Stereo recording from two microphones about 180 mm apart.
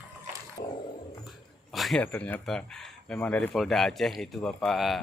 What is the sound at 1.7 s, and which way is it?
Speech, centre (ahead or behind).